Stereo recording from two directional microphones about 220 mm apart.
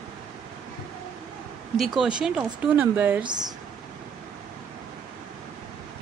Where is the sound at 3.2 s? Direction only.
20° right (ahead or behind).